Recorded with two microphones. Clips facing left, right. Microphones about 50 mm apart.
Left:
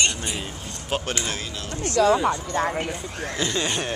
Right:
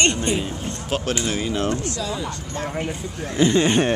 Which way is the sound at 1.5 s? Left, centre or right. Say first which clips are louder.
Right 11 dB; right.